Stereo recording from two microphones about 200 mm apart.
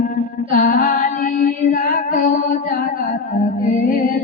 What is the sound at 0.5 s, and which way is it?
Music, 45° left (ahead or behind).